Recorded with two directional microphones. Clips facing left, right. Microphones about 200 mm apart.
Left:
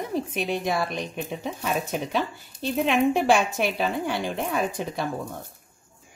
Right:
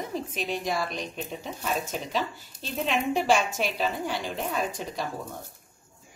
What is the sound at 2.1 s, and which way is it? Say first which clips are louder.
A woman's voice: left 3 dB; 55° left (ahead or behind).